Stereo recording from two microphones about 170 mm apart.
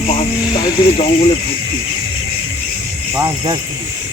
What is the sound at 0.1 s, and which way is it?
Speech, 30° left (ahead or behind).